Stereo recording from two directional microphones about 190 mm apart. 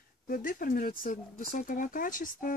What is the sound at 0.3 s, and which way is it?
Speech, 45° left (ahead or behind).